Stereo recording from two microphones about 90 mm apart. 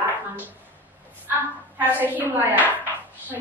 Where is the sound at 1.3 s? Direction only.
20° right (ahead or behind).